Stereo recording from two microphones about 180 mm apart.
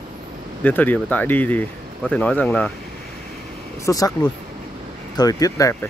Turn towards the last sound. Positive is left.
turn(degrees=20)  # may be behind; listen again after turning